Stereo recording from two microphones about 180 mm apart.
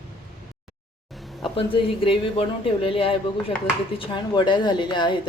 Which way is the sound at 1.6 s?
30° left (ahead or behind).